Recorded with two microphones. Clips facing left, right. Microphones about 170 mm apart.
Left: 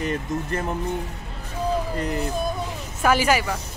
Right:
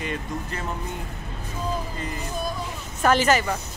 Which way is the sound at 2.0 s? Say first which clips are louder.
Left 7 dB; 65° left (ahead or behind).